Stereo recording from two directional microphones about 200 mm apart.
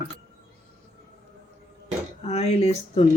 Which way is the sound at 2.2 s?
30° left (ahead or behind).